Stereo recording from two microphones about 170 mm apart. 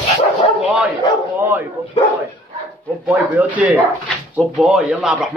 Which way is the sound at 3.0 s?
10° right (ahead or behind).